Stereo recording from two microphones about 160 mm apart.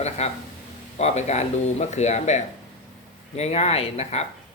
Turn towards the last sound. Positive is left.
turn(degrees=40)  # may be behind; listen again after turning